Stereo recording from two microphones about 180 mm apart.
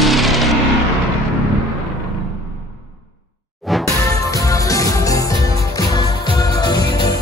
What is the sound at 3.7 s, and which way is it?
Music, centre (ahead or behind).